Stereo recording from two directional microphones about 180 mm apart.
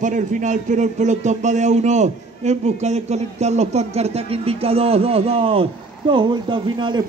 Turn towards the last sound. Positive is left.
turn(degrees=-25)  # may be behind; listen again after turning